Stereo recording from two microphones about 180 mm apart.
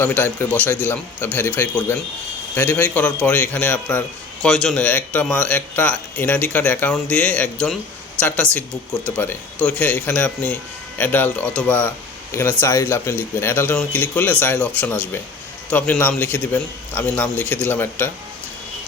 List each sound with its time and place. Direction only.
0.0 s speech: 10° left (ahead or behind)